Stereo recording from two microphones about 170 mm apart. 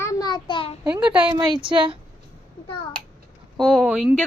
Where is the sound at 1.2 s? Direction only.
25° right (ahead or behind).